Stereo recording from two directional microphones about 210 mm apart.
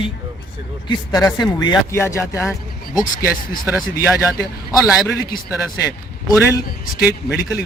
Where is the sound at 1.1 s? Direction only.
20° left (ahead or behind).